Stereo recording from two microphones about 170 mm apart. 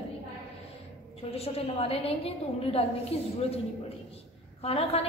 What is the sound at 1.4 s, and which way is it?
A woman's voice, 35° left (ahead or behind).